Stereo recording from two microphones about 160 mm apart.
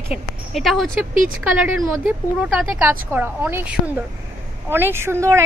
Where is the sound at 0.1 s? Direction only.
Centre (ahead or behind).